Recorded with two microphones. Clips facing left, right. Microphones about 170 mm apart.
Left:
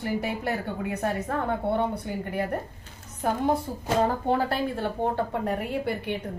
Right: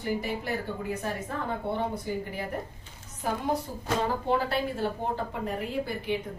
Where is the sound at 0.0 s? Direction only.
65° left (ahead or behind).